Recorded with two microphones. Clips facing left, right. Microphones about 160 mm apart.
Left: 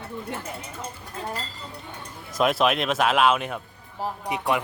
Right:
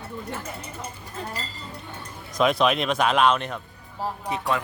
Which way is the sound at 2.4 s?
5° left (ahead or behind).